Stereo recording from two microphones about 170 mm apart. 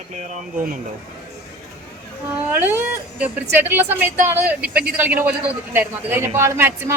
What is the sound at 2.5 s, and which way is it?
A woman's voice, 15° right (ahead or behind).